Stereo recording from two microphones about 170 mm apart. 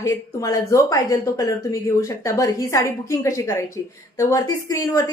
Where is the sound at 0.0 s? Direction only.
20° left (ahead or behind).